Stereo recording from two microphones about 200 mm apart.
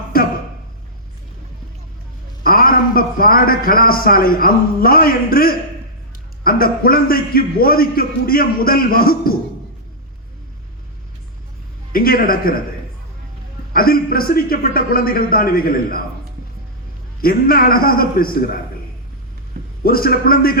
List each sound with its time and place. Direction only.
0.1 s a sound: 45° left (ahead or behind)
2.4 s a man's voice: 45° left (ahead or behind)
11.9 s a man's voice: 45° left (ahead or behind)
13.7 s a man's voice: 45° left (ahead or behind)
17.2 s a man's voice: 45° left (ahead or behind)
19.8 s a man's voice: 45° left (ahead or behind)